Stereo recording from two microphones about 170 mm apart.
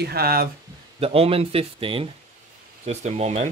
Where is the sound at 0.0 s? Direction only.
65° right (ahead or behind).